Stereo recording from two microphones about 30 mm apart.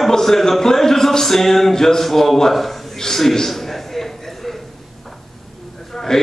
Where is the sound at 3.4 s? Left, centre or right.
Centre.